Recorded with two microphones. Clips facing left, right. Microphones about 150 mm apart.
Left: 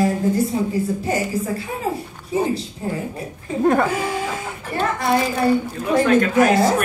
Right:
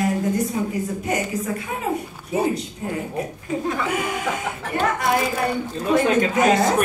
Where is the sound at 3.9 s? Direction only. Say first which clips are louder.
Left 2 dB; 30° left (ahead or behind).